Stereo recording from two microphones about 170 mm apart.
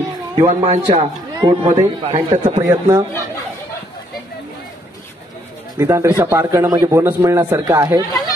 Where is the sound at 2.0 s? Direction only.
40° right (ahead or behind).